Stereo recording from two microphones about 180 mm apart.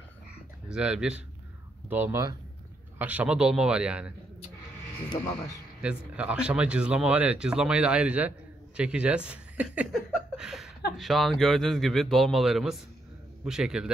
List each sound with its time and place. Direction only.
0.7 s speech: 5° right (ahead or behind)
5.1 s speech: 25° left (ahead or behind)
5.8 s speech: 5° right (ahead or behind)